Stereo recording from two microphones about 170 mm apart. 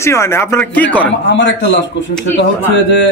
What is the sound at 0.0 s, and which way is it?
Speech, 15° left (ahead or behind).